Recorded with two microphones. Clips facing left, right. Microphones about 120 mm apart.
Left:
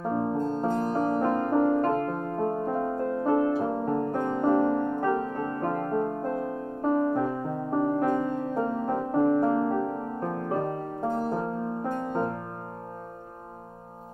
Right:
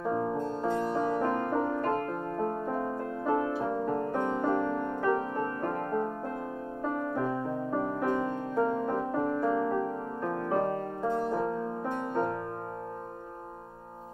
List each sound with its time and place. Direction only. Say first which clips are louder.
0.1 s music: left 5 dB; 40° left (ahead or behind)
7.0 s music: left 6 dB; 30° left (ahead or behind)
8.0 s music: left 4 dB; 45° left (ahead or behind)
11.1 s music: left 1 dB; 45° left (ahead or behind)